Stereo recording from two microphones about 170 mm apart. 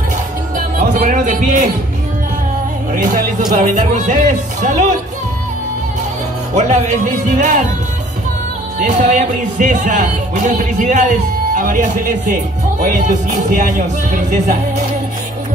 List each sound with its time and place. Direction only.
0.6 s music: 55° right (ahead or behind)
2.9 s music: 50° right (ahead or behind)
3.9 s speech: 45° right (ahead or behind)
6.5 s speech: 45° right (ahead or behind)
8.7 s speech: 45° right (ahead or behind)
13.5 s speech: 50° right (ahead or behind)